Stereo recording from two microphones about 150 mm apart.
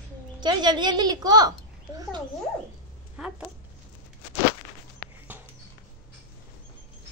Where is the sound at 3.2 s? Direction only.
5° right (ahead or behind).